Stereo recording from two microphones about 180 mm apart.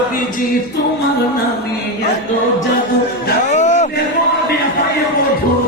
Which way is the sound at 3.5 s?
40° left (ahead or behind).